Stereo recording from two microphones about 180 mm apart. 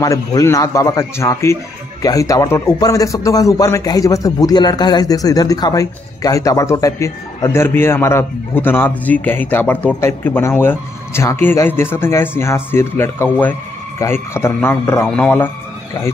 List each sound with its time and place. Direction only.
0.0 s a man's voice: 20° left (ahead or behind)